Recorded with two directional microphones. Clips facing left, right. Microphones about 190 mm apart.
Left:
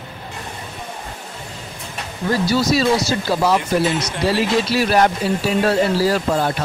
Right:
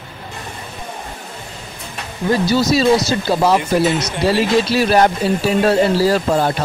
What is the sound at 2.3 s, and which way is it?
Speech, 25° right (ahead or behind).